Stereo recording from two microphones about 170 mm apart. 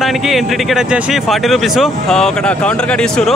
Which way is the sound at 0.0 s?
Centre (ahead or behind).